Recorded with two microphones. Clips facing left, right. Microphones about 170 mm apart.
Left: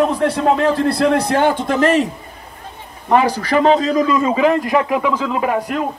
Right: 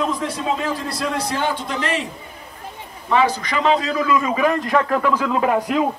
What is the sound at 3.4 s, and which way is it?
A man's voice, 35° left (ahead or behind).